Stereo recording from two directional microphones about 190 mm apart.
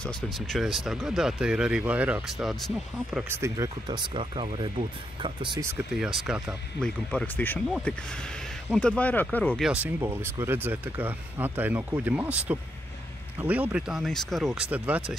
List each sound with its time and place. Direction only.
0.0 s speech: centre (ahead or behind)
3.3 s speech: 15° right (ahead or behind)
5.7 s speech: centre (ahead or behind)
9.7 s speech: 10° right (ahead or behind)